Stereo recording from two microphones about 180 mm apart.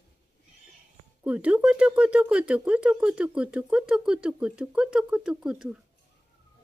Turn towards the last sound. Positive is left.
turn(degrees=-5)  # may be behind; listen again after turning